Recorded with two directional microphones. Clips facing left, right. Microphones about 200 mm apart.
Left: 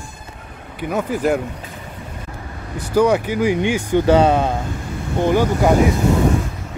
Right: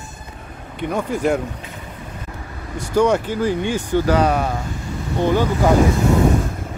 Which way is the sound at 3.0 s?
10° left (ahead or behind).